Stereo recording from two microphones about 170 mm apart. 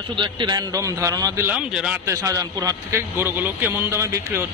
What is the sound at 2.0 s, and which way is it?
Speech, 20° right (ahead or behind).